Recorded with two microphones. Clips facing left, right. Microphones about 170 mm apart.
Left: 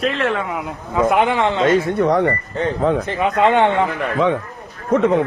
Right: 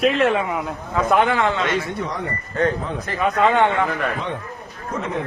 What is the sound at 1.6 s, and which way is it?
Speech, 50° left (ahead or behind).